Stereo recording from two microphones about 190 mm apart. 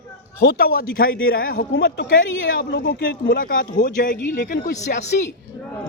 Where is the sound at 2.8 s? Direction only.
50° left (ahead or behind).